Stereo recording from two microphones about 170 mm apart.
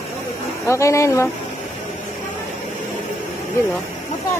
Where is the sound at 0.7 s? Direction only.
15° left (ahead or behind).